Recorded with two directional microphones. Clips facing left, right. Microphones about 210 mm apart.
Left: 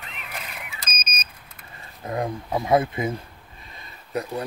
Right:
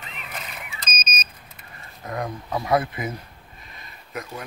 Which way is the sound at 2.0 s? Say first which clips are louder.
Left 3 dB; 25° left (ahead or behind).